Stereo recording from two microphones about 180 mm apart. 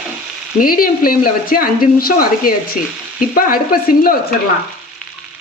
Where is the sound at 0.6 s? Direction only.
55° left (ahead or behind).